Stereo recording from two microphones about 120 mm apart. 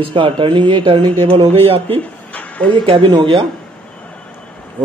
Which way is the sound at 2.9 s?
40° right (ahead or behind).